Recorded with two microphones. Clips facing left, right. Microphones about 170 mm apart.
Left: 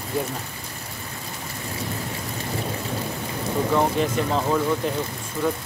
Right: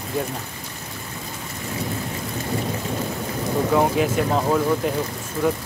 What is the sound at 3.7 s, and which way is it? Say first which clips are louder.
Speech: right 3 dB; 5° right (ahead or behind).